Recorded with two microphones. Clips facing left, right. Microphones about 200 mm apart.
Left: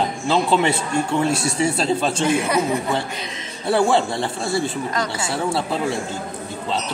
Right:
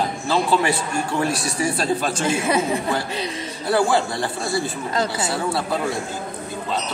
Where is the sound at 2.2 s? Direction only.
25° right (ahead or behind).